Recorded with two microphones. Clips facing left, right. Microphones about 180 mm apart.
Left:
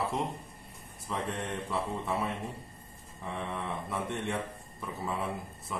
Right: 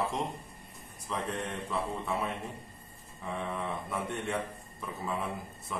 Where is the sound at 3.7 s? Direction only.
Centre (ahead or behind).